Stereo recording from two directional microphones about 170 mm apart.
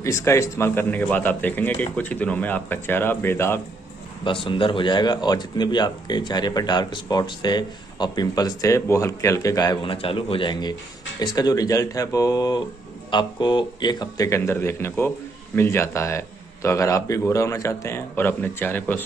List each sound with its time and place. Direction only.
0.0 s a man's voice: 15° left (ahead or behind)
4.2 s a man's voice: 30° left (ahead or behind); by 19.0 s 10° left (ahead or behind)